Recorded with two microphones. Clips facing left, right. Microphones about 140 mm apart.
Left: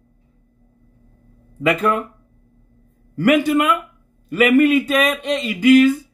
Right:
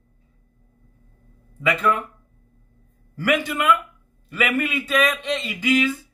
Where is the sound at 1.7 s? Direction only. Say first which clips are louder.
Left 1 dB; 45° left (ahead or behind).